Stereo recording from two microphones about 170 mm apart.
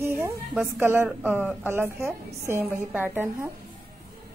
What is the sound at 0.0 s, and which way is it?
A woman's voice, 15° right (ahead or behind).